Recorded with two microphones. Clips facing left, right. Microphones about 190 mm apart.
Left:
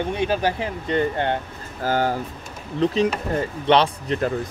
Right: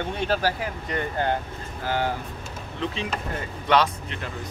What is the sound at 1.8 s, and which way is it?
Speech, 45° left (ahead or behind).